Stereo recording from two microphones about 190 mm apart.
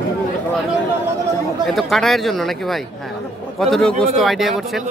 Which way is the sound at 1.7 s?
Centre (ahead or behind).